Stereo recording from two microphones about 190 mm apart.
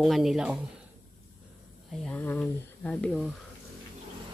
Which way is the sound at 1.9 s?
5° left (ahead or behind).